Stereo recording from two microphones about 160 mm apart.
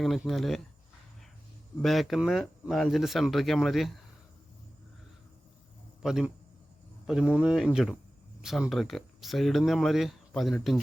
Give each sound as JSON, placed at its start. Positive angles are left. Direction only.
{"t": 0.0, "sound": "speech", "side_deg": 0}
{"t": 1.8, "sound": "speech", "side_deg": 0}
{"t": 6.0, "sound": "a man's voice", "side_deg": -5}